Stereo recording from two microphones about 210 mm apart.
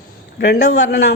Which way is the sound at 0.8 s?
60° left (ahead or behind).